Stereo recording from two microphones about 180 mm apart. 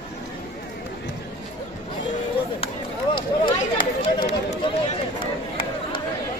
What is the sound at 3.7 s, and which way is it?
Run, 35° left (ahead or behind).